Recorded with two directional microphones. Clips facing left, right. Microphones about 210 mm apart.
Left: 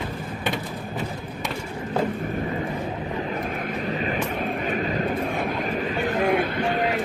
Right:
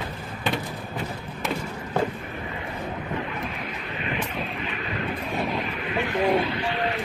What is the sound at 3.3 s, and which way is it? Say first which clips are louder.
Vehicle: left 5 dB; 45° left (ahead or behind).